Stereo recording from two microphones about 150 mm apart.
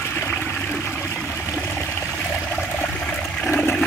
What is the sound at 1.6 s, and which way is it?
Water, 10° left (ahead or behind).